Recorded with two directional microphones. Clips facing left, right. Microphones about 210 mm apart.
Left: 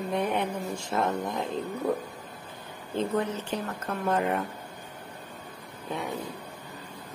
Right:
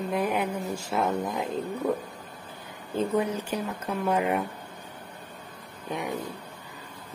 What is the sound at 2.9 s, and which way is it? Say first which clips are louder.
Speech: right 2 dB; 10° right (ahead or behind).